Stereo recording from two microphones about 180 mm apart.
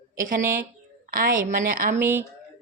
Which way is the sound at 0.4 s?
15° right (ahead or behind).